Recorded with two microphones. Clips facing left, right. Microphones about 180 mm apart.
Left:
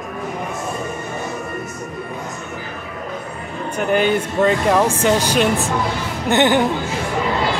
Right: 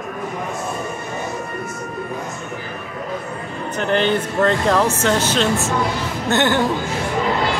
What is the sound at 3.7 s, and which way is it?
Speech, 10° left (ahead or behind).